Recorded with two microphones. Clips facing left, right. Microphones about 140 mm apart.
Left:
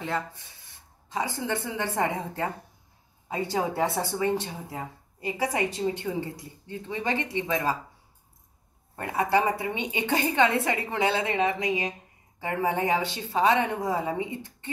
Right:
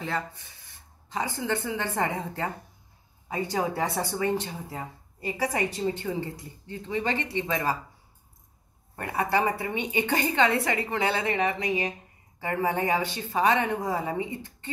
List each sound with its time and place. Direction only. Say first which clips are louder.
1.1 s a woman's voice: even; 15° left (ahead or behind)
8.9 s speech: left 2 dB; 20° left (ahead or behind)